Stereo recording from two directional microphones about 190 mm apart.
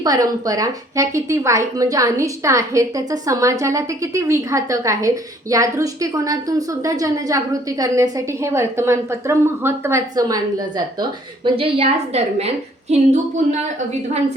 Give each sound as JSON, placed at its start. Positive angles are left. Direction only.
{"t": 0.0, "sound": "a woman's voice", "side_deg": -20}